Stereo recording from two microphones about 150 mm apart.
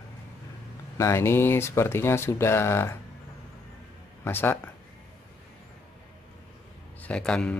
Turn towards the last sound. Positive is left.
turn(degrees=5)  # may be behind; listen again after turning